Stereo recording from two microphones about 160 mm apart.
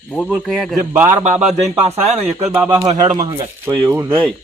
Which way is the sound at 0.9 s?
15° right (ahead or behind).